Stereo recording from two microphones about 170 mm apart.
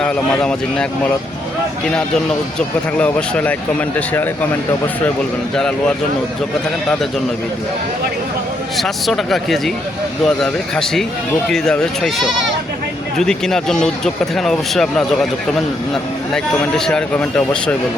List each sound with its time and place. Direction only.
0.0 s speech: 5° left (ahead or behind)
2.6 s speech: 5° left (ahead or behind)
8.8 s speech: centre (ahead or behind)